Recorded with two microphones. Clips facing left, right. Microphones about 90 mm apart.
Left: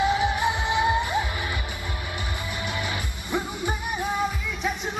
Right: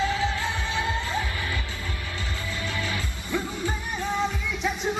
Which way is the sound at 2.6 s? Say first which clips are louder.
Even; 20° left (ahead or behind).